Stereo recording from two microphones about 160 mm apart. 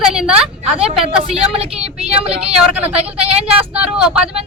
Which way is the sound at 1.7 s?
35° right (ahead or behind).